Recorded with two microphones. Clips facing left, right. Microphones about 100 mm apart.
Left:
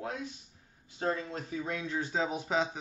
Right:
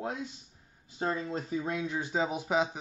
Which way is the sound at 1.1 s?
15° right (ahead or behind).